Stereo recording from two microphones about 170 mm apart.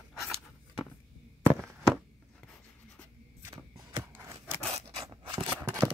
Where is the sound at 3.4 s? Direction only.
20° right (ahead or behind).